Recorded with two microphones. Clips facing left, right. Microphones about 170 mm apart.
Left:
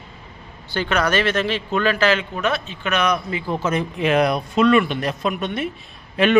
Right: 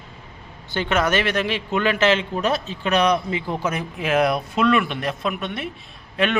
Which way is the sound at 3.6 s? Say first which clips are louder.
Left 4 dB; 10° right (ahead or behind).